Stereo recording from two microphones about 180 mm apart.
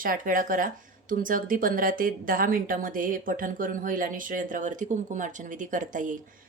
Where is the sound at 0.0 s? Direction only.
50° right (ahead or behind).